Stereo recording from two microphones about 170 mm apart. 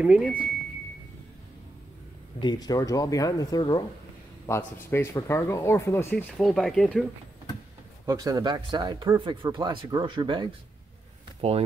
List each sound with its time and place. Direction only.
0.0 s speech: 5° right (ahead or behind)
2.4 s speech: 25° left (ahead or behind); by 7.1 s centre (ahead or behind)
8.1 s speech: 20° right (ahead or behind)
11.4 s speech: 40° right (ahead or behind)